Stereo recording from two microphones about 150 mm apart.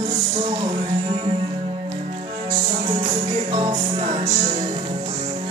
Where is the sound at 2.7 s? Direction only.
30° right (ahead or behind).